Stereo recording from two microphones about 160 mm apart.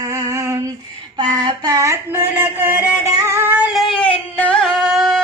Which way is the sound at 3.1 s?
20° right (ahead or behind).